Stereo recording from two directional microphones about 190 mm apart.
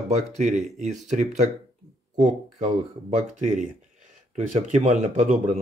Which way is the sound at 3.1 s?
40° right (ahead or behind).